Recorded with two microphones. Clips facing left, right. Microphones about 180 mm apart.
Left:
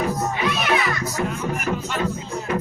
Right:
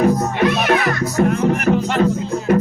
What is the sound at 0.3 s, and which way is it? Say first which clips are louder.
Speech: right 6 dB; 50° right (ahead or behind).